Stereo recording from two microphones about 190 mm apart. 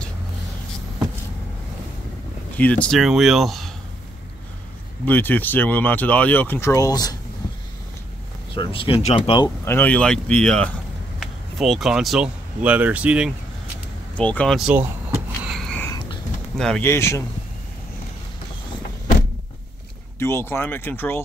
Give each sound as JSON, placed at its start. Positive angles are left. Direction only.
{"t": 2.5, "sound": "speech", "side_deg": 5}
{"t": 5.0, "sound": "speech", "side_deg": 10}
{"t": 8.5, "sound": "speech", "side_deg": 30}
{"t": 9.7, "sound": "speech", "side_deg": 10}
{"t": 14.1, "sound": "speech", "side_deg": 5}
{"t": 15.4, "sound": "whispering", "side_deg": 0}
{"t": 16.5, "sound": "speech", "side_deg": 5}
{"t": 20.2, "sound": "speech", "side_deg": 15}